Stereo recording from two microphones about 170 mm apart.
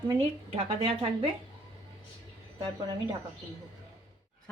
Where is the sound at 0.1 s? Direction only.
30° right (ahead or behind).